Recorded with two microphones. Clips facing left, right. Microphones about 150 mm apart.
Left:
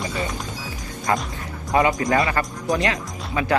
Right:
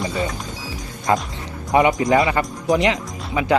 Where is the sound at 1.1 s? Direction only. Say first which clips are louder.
Right 3 dB; 20° right (ahead or behind).